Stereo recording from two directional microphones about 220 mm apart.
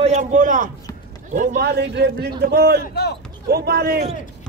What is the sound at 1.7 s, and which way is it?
A man's voice, 50° right (ahead or behind).